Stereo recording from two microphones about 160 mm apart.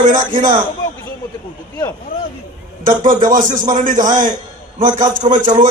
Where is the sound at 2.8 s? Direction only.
55° right (ahead or behind).